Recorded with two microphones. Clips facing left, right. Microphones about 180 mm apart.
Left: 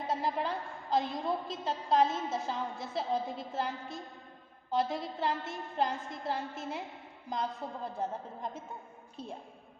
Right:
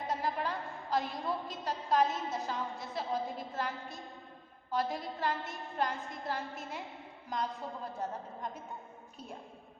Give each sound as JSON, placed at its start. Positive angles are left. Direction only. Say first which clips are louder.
{"t": 0.1, "sound": "a woman's voice", "louder": "left 2 dB", "side_deg": 25}